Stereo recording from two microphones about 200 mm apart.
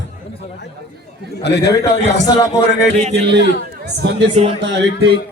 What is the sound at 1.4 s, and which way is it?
Speech, 55° left (ahead or behind).